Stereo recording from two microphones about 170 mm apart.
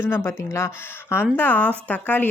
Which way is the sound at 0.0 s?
15° left (ahead or behind).